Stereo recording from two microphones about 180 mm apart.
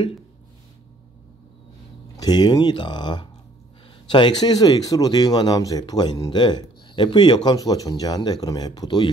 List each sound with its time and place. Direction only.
2.1 s speech: 25° left (ahead or behind)